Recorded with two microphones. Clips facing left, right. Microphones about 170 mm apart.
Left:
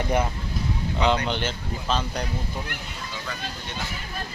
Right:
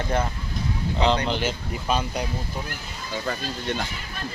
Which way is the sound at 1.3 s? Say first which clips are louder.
Right 2 dB; 10° right (ahead or behind).